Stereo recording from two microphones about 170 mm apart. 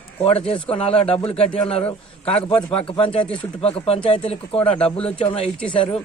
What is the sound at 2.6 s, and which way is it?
A man's voice, 30° left (ahead or behind).